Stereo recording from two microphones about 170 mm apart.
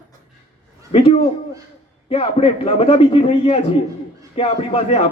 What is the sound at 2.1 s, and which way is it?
A man's voice, 35° left (ahead or behind).